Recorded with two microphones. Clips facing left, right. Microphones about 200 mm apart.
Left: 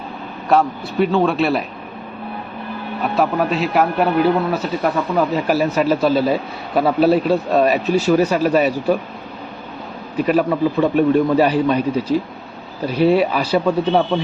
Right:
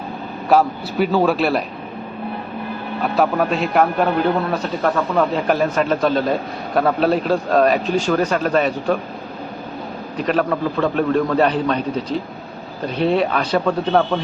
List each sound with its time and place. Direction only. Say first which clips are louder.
0.4 s a man's voice: right 1 dB; centre (ahead or behind)
3.0 s a man's voice: even; centre (ahead or behind)
10.2 s a man's voice: left 3 dB; 5° left (ahead or behind)